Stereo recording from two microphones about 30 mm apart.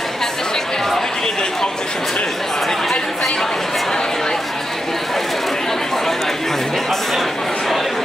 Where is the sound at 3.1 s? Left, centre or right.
Centre.